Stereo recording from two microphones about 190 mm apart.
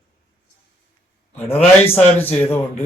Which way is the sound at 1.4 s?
30° left (ahead or behind).